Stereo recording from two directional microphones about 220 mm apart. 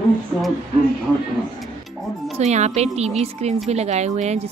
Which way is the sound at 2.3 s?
30° right (ahead or behind).